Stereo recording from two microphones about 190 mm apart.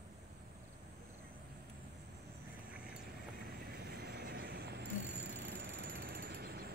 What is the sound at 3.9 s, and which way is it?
Vehicle, 60° right (ahead or behind).